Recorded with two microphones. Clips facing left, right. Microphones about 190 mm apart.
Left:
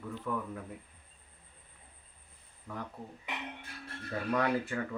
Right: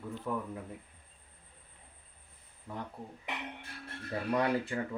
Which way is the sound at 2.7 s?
25° right (ahead or behind).